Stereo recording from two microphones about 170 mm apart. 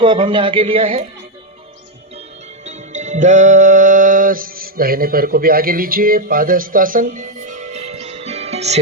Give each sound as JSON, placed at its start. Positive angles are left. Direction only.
{"t": 0.0, "sound": "speech", "side_deg": -30}
{"t": 2.6, "sound": "music", "side_deg": -45}